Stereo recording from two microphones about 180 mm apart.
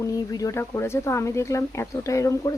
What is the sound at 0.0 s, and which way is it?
Speech, 20° left (ahead or behind).